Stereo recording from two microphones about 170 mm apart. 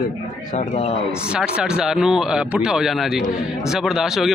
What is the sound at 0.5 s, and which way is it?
Speech, 40° left (ahead or behind).